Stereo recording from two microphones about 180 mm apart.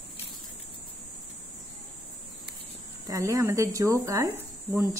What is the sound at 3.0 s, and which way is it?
Speech, 20° right (ahead or behind).